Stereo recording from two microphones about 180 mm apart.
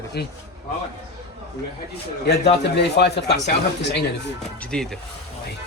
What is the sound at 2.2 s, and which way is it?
Speech, 65° left (ahead or behind).